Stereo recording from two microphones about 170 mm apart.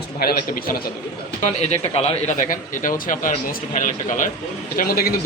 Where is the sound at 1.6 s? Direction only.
40° left (ahead or behind).